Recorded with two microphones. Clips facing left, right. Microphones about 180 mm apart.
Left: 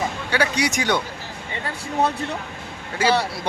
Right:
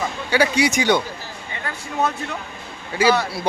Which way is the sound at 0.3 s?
5° right (ahead or behind).